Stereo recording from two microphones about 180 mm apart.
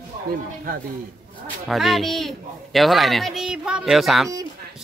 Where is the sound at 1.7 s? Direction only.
Centre (ahead or behind).